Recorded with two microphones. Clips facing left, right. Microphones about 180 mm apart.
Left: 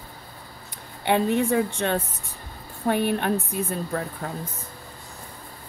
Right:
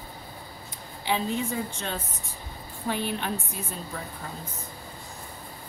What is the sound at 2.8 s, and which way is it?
A woman's voice, 55° left (ahead or behind).